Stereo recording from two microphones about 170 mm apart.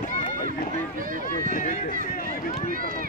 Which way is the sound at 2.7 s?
55° right (ahead or behind).